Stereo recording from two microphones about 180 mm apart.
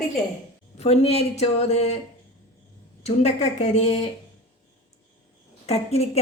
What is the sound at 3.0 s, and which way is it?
Speech, 40° left (ahead or behind).